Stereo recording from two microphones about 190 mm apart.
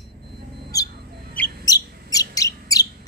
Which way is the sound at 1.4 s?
20° left (ahead or behind).